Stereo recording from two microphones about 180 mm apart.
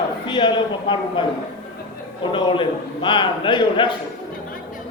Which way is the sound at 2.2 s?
25° left (ahead or behind).